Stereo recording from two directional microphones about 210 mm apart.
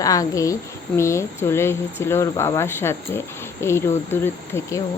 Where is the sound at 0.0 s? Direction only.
15° left (ahead or behind).